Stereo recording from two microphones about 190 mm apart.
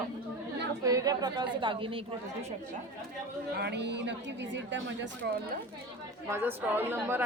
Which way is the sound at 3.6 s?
65° right (ahead or behind).